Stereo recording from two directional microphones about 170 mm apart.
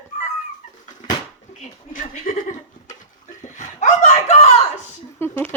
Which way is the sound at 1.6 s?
45° left (ahead or behind).